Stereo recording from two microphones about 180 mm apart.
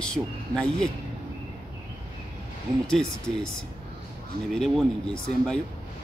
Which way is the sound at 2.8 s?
5° left (ahead or behind).